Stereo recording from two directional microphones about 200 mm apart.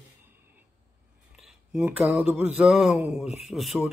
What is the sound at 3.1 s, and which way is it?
Speech, centre (ahead or behind).